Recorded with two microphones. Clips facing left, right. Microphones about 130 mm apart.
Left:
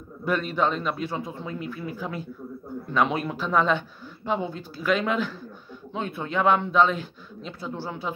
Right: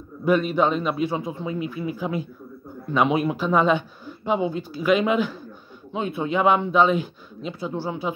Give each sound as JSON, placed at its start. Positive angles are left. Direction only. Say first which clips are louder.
{"t": 0.2, "sound": "speech", "louder": "right 5 dB", "side_deg": -10}